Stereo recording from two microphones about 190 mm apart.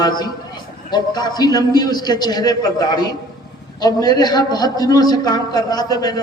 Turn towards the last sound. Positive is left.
turn(degrees=20)  # may be behind; listen again after turning